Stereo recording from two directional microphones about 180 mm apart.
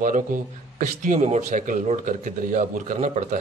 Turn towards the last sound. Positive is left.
turn(degrees=-40)  # may be behind; listen again after turning